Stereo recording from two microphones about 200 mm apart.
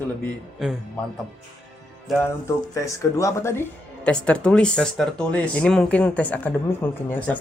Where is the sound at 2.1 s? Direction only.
Centre (ahead or behind).